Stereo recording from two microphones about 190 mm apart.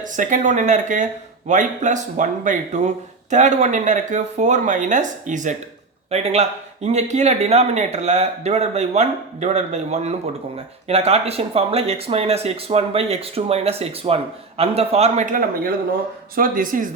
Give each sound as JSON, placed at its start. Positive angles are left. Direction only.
{"t": 0.0, "sound": "speech", "side_deg": -40}